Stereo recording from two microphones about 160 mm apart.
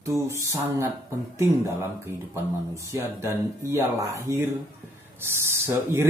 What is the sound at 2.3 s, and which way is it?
Speech, 20° right (ahead or behind).